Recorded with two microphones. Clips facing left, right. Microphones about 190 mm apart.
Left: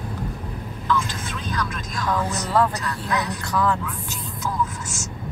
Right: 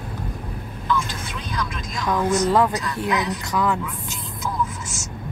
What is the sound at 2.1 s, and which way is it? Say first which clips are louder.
Speech: right 5 dB; 15° right (ahead or behind).